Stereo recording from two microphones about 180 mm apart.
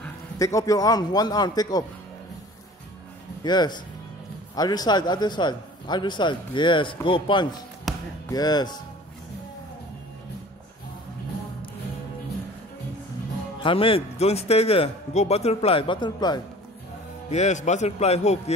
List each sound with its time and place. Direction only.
0.0 s a man's voice: 15° left (ahead or behind)
3.4 s a man's voice: 25° left (ahead or behind)
13.6 s a man's voice: 30° left (ahead or behind)
17.3 s a man's voice: 40° left (ahead or behind)